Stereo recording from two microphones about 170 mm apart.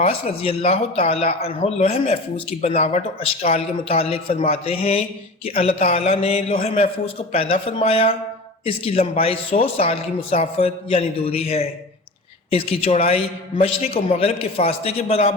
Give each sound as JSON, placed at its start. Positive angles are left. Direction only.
{"t": 0.0, "sound": "speech", "side_deg": 35}